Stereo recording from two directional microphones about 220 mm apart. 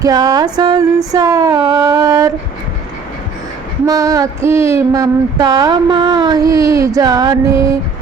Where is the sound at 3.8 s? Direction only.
15° right (ahead or behind).